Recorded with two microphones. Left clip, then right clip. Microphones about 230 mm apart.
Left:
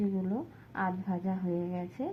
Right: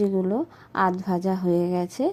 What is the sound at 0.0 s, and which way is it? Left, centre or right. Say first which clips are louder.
A woman's voice: right 12 dB; right.